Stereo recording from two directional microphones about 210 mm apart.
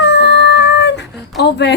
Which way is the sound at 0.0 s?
55° left (ahead or behind).